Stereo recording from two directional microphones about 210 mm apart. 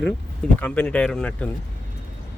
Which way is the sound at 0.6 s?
5° left (ahead or behind).